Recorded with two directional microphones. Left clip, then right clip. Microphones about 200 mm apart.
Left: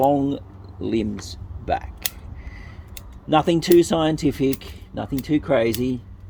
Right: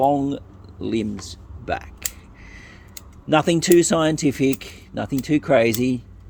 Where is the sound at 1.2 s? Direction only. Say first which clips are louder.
Left 2 dB; 15° right (ahead or behind).